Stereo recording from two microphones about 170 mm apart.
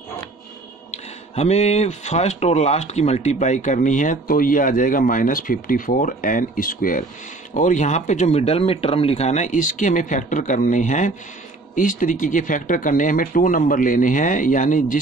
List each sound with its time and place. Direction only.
0.9 s speech: 40° left (ahead or behind)